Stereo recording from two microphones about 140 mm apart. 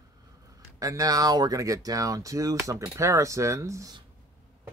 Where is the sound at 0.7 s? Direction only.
25° right (ahead or behind).